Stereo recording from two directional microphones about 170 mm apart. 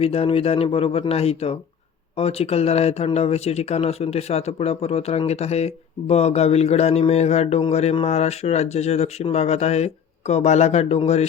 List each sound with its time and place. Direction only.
0.0 s speech: 35° left (ahead or behind)